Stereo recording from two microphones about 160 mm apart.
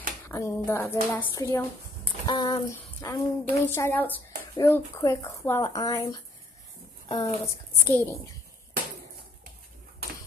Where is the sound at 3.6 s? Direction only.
15° left (ahead or behind).